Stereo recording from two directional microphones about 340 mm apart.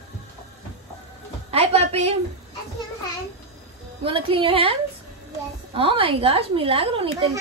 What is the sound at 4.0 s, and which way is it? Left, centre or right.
Speech, centre.